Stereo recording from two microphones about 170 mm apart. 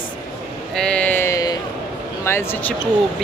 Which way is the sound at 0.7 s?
5° left (ahead or behind).